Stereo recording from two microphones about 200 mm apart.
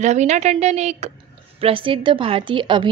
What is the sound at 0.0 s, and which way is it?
A woman's voice, 35° right (ahead or behind).